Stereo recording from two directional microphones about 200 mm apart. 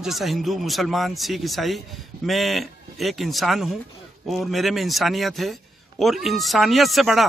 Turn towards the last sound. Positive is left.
turn(degrees=0)  # may be behind; listen again after turning